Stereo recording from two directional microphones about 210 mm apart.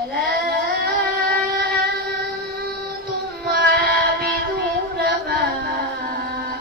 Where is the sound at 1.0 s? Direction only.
50° right (ahead or behind).